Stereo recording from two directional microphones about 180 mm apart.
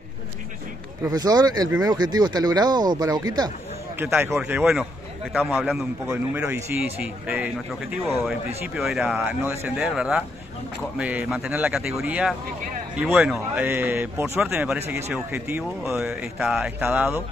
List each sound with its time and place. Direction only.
1.0 s a man's voice: 20° right (ahead or behind)
8.7 s a man's voice: 5° right (ahead or behind)